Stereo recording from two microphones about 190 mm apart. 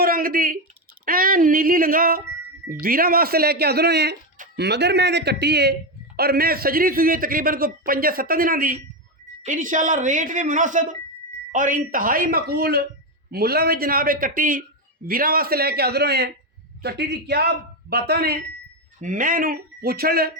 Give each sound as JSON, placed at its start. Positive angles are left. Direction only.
{"t": 0.0, "sound": "a sound", "side_deg": -50}
{"t": 1.0, "sound": "a man's voice", "side_deg": -50}
{"t": 18.9, "sound": "a man's voice", "side_deg": -45}